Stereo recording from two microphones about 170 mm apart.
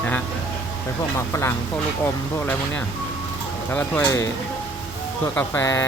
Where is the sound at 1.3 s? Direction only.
15° left (ahead or behind).